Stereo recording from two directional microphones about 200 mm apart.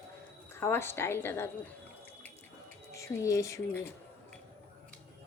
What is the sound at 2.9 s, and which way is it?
Speech, 15° left (ahead or behind).